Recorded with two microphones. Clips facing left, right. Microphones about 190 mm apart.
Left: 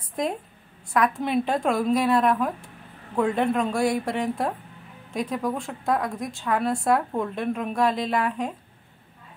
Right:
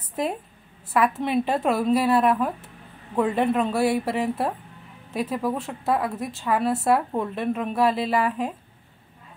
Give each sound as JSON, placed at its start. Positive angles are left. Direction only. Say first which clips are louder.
{"t": 0.1, "sound": "a woman's voice", "louder": "even", "side_deg": -5}